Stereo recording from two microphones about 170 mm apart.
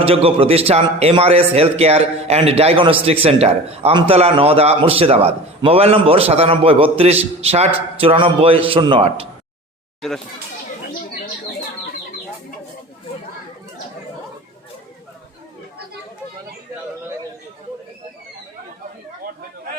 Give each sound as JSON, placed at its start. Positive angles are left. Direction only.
{"t": 0.0, "sound": "a man's voice", "side_deg": -35}